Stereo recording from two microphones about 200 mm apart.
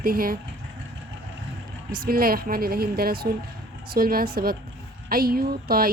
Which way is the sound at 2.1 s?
45° right (ahead or behind).